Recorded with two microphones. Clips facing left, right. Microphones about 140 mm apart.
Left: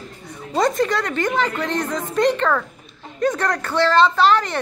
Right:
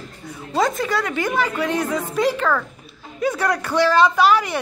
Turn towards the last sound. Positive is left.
turn(degrees=-10)  # may be behind; listen again after turning